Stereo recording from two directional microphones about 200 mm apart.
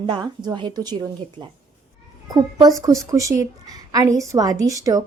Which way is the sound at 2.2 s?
20° right (ahead or behind).